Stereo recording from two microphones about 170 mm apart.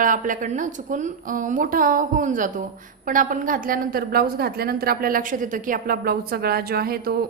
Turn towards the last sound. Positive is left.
turn(degrees=-65)  # may be behind; listen again after turning